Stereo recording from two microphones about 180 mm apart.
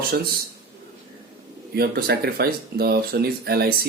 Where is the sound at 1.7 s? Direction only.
60° right (ahead or behind).